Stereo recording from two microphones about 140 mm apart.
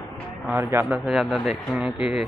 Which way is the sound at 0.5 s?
25° right (ahead or behind).